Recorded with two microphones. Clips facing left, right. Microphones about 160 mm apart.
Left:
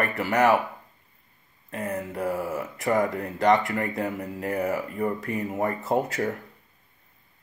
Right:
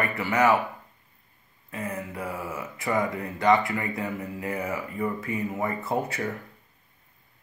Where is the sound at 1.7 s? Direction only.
40° left (ahead or behind).